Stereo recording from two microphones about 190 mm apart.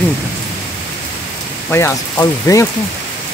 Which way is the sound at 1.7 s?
15° left (ahead or behind).